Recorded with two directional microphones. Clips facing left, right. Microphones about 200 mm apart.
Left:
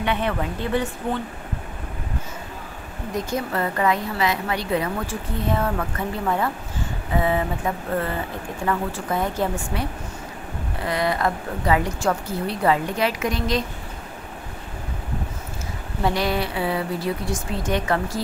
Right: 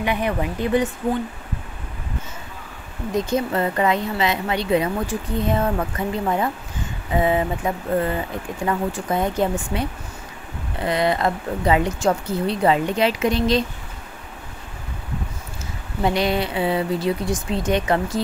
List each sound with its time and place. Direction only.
0.0 s speech: 10° right (ahead or behind)
3.3 s speech: 20° right (ahead or behind)
16.0 s speech: 20° right (ahead or behind)